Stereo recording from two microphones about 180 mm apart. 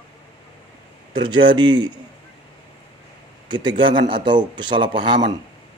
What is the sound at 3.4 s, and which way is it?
A man's voice, 25° right (ahead or behind).